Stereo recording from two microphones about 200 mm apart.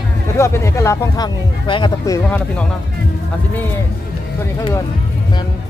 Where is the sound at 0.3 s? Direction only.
15° left (ahead or behind).